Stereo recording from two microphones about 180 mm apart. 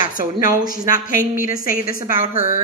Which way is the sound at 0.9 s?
50° left (ahead or behind).